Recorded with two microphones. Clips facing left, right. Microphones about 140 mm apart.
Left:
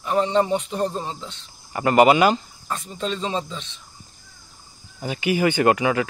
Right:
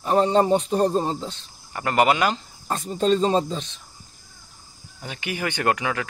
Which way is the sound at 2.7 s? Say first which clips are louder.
Right 7 dB; 40° right (ahead or behind).